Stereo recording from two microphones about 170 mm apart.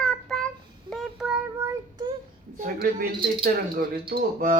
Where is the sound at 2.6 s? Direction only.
55° right (ahead or behind).